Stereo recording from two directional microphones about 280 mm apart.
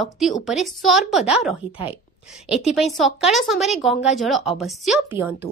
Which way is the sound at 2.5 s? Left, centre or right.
Left.